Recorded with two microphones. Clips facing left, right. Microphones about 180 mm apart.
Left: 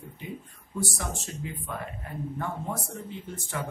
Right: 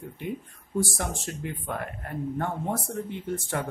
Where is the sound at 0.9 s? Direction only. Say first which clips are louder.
Right 3 dB; 60° right (ahead or behind).